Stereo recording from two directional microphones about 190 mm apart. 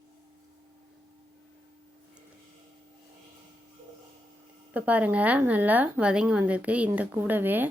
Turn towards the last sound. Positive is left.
turn(degrees=-10)  # may be behind; listen again after turning